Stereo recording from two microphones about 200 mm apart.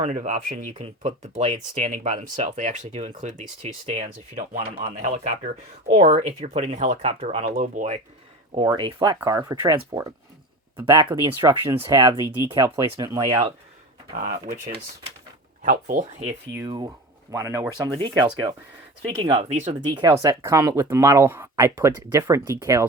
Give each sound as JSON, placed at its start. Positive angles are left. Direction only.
{"t": 0.0, "sound": "speech", "side_deg": -35}
{"t": 8.5, "sound": "speech", "side_deg": -25}
{"t": 14.1, "sound": "speech", "side_deg": -45}
{"t": 15.6, "sound": "speech", "side_deg": -40}
{"t": 16.6, "sound": "speech", "side_deg": -20}
{"t": 19.9, "sound": "speech", "side_deg": -20}